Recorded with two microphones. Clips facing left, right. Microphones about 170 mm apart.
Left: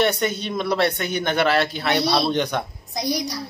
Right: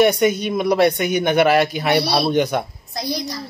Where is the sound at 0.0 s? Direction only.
10° right (ahead or behind).